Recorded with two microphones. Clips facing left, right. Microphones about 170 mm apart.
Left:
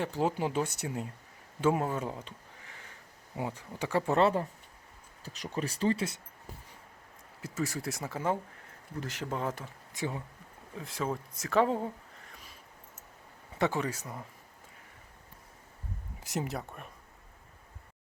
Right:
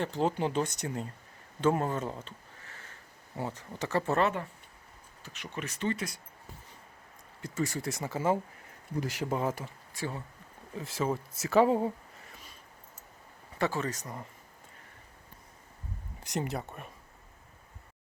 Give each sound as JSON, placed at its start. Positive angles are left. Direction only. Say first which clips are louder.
{"t": 0.0, "sound": "speech", "louder": "right 1 dB", "side_deg": 10}
{"t": 4.2, "sound": "speech", "louder": "left 3 dB", "side_deg": 30}
{"t": 7.4, "sound": "speech", "louder": "right 1 dB", "side_deg": 0}
{"t": 9.9, "sound": "speech", "louder": "left 2 dB", "side_deg": 20}
{"t": 10.8, "sound": "speech", "louder": "right 3 dB", "side_deg": 0}
{"t": 12.3, "sound": "a sound", "louder": "right 1 dB", "side_deg": 0}
{"t": 13.6, "sound": "speech", "louder": "left 1 dB", "side_deg": 15}
{"t": 16.2, "sound": "speech", "louder": "right 1 dB", "side_deg": 0}